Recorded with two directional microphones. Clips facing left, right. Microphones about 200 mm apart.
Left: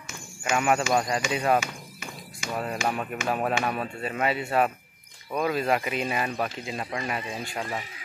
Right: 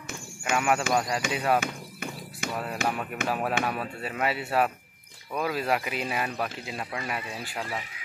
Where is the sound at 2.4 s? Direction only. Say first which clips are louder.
Even; 55° right (ahead or behind).